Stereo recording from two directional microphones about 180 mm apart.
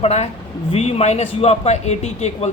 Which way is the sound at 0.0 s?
35° left (ahead or behind).